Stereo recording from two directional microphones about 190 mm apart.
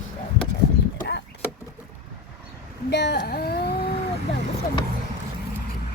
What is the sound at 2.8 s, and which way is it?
Speech, 65° left (ahead or behind).